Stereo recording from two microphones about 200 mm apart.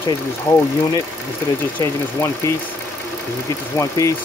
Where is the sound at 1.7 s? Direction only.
15° left (ahead or behind).